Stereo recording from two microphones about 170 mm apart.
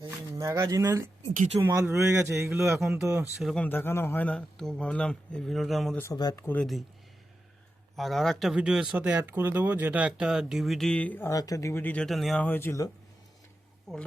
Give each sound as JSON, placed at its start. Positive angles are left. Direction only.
{"t": 0.0, "sound": "speech", "side_deg": -20}
{"t": 3.2, "sound": "speech", "side_deg": 0}
{"t": 6.0, "sound": "speech", "side_deg": 20}
{"t": 6.4, "sound": "speech", "side_deg": 10}
{"t": 7.9, "sound": "speech", "side_deg": 0}
{"t": 13.9, "sound": "speech", "side_deg": 0}